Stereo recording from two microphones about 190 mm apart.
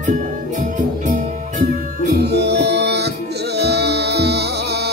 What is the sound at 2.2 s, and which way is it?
Music, 60° right (ahead or behind).